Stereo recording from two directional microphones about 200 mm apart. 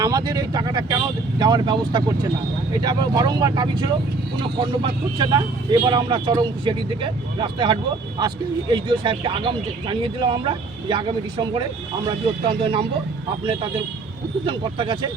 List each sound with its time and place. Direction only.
0.0 s speech: 20° right (ahead or behind)